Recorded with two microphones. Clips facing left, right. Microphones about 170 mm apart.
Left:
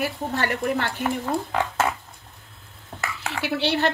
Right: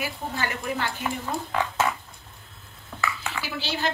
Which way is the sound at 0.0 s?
65° left (ahead or behind).